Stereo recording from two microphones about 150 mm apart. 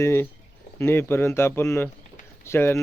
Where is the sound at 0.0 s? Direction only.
15° left (ahead or behind).